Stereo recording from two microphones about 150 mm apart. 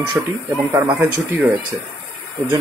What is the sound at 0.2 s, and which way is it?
Speech, 10° right (ahead or behind).